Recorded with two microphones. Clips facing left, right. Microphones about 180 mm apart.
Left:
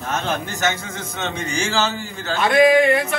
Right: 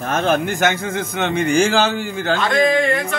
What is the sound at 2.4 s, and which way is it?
Speech, 15° left (ahead or behind).